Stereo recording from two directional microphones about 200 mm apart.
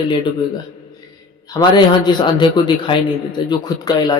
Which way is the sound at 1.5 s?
20° left (ahead or behind).